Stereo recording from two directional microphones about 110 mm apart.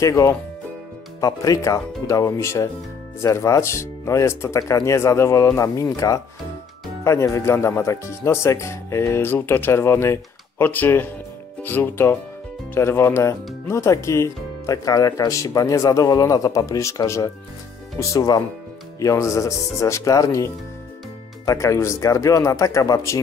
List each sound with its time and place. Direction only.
0.0 s speech: 30° left (ahead or behind)